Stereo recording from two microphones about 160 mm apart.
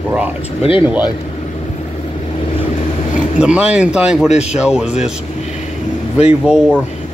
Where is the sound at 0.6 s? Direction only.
35° left (ahead or behind).